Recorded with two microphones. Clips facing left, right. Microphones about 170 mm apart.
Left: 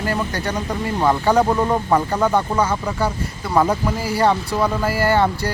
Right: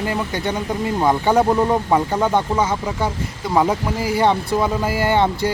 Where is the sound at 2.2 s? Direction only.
20° right (ahead or behind).